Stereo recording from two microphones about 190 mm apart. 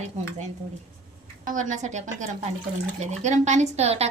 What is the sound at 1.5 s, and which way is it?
A woman's voice, 40° right (ahead or behind).